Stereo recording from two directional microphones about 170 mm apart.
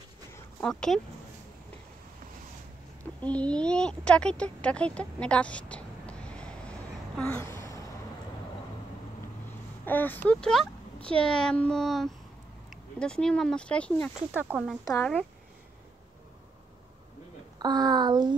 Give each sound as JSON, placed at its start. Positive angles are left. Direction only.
{"t": 0.3, "sound": "a sound", "side_deg": 5}
{"t": 3.2, "sound": "speech", "side_deg": 10}
{"t": 9.8, "sound": "speech", "side_deg": 10}
{"t": 14.3, "sound": "speech", "side_deg": -10}
{"t": 17.6, "sound": "speech", "side_deg": -25}